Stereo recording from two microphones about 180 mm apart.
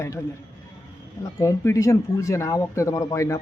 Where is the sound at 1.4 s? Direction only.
15° left (ahead or behind).